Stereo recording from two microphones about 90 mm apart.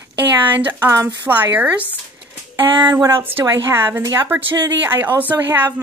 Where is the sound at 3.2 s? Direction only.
25° right (ahead or behind).